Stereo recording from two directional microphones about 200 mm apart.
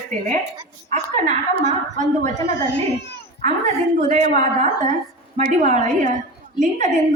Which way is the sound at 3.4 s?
35° right (ahead or behind).